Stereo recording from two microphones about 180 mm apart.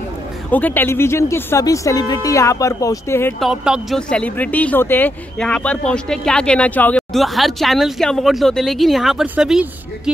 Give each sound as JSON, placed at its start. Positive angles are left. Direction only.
{"t": 0.5, "sound": "speech", "side_deg": 10}
{"t": 3.3, "sound": "speech", "side_deg": -5}